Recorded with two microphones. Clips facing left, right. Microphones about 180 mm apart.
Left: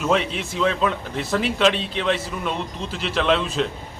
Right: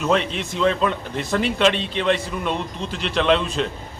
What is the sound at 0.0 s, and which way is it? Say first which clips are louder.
A man's voice: right 1 dB; 5° left (ahead or behind).